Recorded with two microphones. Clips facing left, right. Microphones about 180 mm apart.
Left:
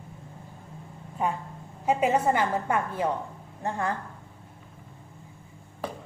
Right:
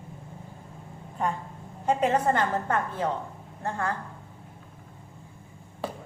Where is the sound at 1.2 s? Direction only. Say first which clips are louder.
Left 1 dB; 5° left (ahead or behind).